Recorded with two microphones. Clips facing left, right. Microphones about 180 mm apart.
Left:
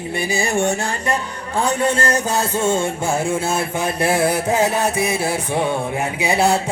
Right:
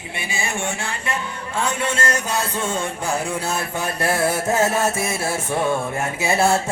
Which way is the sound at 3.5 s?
25° left (ahead or behind).